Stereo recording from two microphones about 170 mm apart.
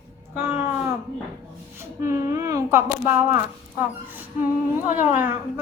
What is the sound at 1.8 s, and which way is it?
A child's voice, 15° right (ahead or behind).